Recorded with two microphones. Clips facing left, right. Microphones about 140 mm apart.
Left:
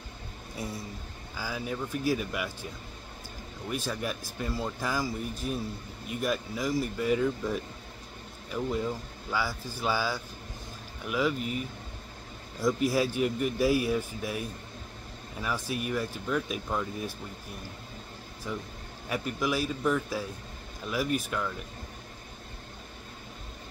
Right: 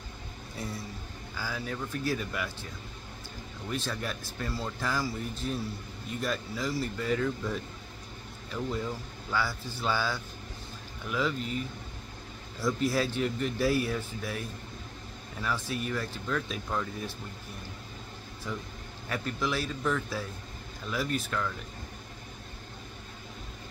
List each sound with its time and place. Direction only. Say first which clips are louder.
1.3 s speech: left 2 dB; 10° left (ahead or behind)
3.7 s speech: left 2 dB; 10° left (ahead or behind)
12.5 s speech: left 2 dB; 15° left (ahead or behind)
15.4 s speech: left 1 dB; 10° left (ahead or behind)
18.5 s speech: left 1 dB; 10° left (ahead or behind)